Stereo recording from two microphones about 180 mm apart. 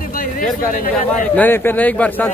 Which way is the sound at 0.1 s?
50° left (ahead or behind).